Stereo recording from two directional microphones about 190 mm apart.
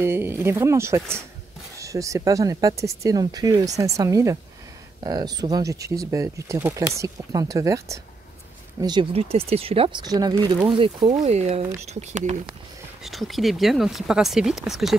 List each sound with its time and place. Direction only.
0.0 s speech: 10° right (ahead or behind)
8.8 s speech: 25° right (ahead or behind)
11.2 s speech: 35° right (ahead or behind)
13.0 s speech: centre (ahead or behind)